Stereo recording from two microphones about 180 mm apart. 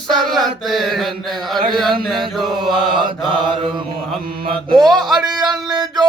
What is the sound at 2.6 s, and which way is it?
Mantra, 30° right (ahead or behind).